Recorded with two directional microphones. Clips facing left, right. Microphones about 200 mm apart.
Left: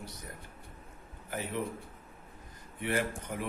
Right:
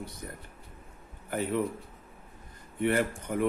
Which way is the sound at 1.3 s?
55° right (ahead or behind).